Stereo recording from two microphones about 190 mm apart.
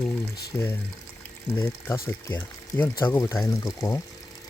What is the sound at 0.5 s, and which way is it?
Speech, 10° left (ahead or behind).